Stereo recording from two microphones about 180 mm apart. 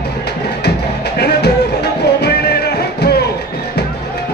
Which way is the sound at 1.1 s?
65° left (ahead or behind).